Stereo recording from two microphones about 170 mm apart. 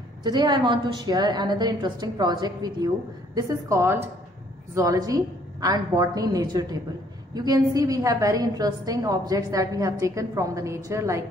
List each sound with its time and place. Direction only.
0.2 s a woman's voice: 25° right (ahead or behind)